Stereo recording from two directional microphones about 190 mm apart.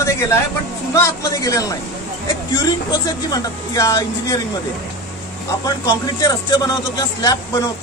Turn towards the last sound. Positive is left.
turn(degrees=20)  # may be behind; listen again after turning